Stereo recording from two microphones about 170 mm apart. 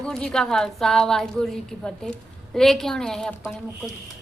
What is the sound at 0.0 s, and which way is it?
A woman's voice, 5° left (ahead or behind).